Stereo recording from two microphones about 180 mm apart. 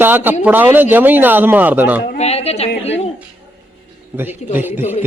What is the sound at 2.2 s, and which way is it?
Speech, 35° left (ahead or behind).